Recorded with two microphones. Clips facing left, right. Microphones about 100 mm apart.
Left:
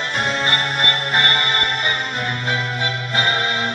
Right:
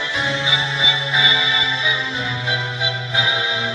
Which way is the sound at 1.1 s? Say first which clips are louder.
Left 1 dB; 30° left (ahead or behind).